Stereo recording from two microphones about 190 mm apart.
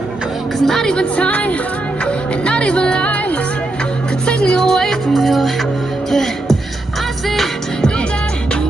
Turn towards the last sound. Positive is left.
turn(degrees=0)  # may be behind; listen again after turning